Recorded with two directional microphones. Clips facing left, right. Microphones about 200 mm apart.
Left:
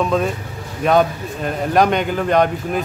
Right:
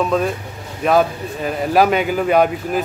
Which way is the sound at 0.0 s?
Centre (ahead or behind).